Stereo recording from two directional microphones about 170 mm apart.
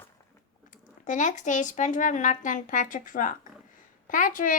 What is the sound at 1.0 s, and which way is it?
Speech, 50° left (ahead or behind).